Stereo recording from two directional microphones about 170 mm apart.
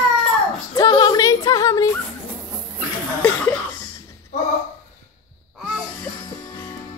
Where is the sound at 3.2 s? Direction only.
10° left (ahead or behind).